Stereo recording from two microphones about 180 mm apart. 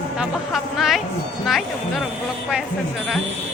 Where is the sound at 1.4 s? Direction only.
Centre (ahead or behind).